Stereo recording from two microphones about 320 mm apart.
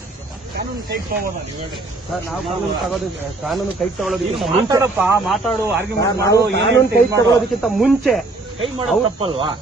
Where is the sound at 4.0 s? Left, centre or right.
Centre.